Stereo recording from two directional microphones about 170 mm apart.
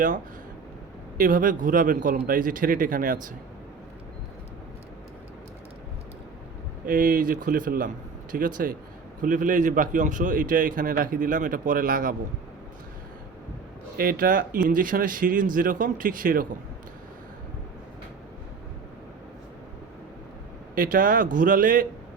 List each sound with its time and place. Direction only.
1.2 s a man's voice: 55° right (ahead or behind)
6.8 s a man's voice: 55° right (ahead or behind)
13.9 s speech: 60° right (ahead or behind)
20.7 s speech: 55° right (ahead or behind)